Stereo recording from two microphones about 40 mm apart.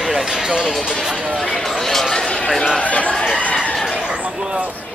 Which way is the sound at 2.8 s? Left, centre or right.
Left.